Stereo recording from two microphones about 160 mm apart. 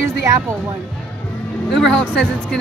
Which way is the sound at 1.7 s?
Centre (ahead or behind).